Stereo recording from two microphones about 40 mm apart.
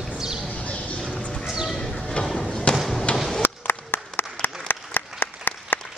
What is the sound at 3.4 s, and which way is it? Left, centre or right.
Applause, left.